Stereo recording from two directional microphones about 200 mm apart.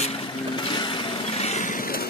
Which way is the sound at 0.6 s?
25° left (ahead or behind).